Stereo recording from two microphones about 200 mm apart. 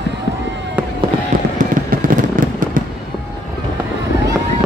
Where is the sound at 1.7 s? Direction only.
40° right (ahead or behind).